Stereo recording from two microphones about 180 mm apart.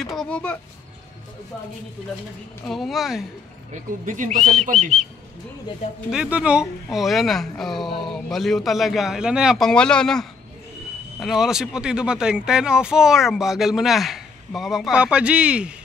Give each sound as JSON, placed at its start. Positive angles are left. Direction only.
{"t": 0.0, "sound": "speech", "side_deg": 0}
{"t": 2.6, "sound": "speech", "side_deg": 0}
{"t": 3.7, "sound": "speech", "side_deg": -45}
{"t": 6.0, "sound": "speech", "side_deg": -5}